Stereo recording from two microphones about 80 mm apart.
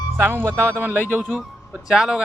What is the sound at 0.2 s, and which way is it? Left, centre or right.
Speech, right.